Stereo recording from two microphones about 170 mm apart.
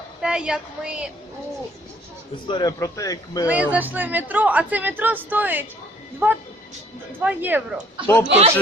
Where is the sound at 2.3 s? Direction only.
25° left (ahead or behind).